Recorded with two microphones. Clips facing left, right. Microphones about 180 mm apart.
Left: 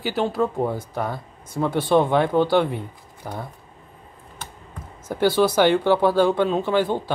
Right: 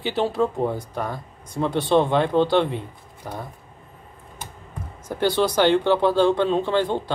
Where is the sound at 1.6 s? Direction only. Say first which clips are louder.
Even; 20° right (ahead or behind).